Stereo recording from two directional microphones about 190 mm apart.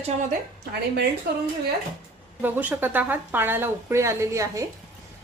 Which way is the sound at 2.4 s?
10° right (ahead or behind).